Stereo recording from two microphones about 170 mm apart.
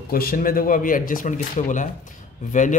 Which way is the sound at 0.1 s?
60° left (ahead or behind).